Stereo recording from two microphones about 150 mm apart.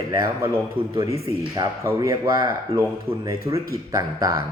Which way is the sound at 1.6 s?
20° right (ahead or behind).